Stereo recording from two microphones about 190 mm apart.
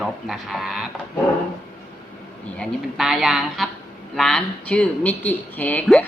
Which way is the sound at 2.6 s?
Centre (ahead or behind).